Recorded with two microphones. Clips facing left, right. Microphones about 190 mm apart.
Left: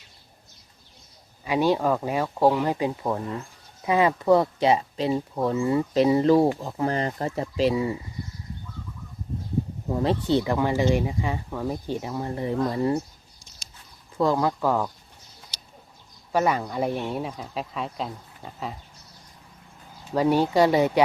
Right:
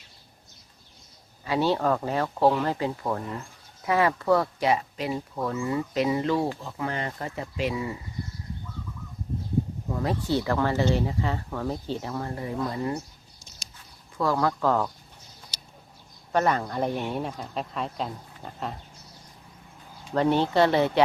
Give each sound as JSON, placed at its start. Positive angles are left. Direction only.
{"t": 1.5, "sound": "speech", "side_deg": 15}
{"t": 9.9, "sound": "speech", "side_deg": 25}
{"t": 14.2, "sound": "speech", "side_deg": 20}
{"t": 16.3, "sound": "speech", "side_deg": 10}
{"t": 20.1, "sound": "speech", "side_deg": 5}